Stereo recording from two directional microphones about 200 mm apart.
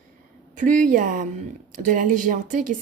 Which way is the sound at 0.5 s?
40° right (ahead or behind).